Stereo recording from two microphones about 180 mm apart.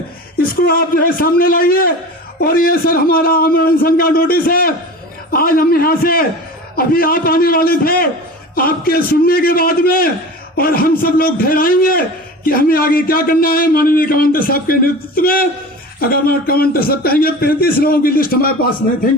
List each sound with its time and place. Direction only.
0.6 s a man's voice: 55° left (ahead or behind)